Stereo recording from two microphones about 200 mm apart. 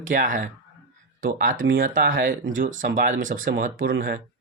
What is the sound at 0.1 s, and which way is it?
Speech, 40° right (ahead or behind).